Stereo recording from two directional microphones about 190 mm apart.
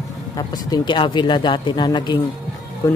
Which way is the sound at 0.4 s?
20° left (ahead or behind).